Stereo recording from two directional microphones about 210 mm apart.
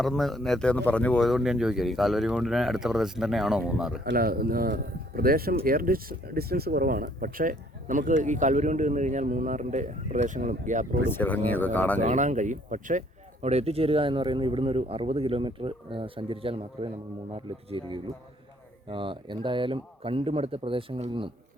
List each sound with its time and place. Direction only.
0.0 s speech: centre (ahead or behind)
4.0 s speech: 45° right (ahead or behind)
11.1 s speech: 10° left (ahead or behind)
11.9 s speech: 35° right (ahead or behind)